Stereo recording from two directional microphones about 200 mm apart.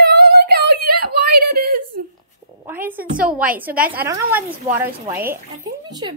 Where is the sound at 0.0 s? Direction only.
50° right (ahead or behind).